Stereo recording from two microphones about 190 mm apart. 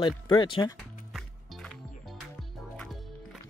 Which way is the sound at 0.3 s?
25° left (ahead or behind).